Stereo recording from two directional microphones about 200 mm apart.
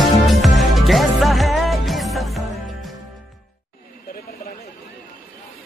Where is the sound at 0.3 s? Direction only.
Centre (ahead or behind).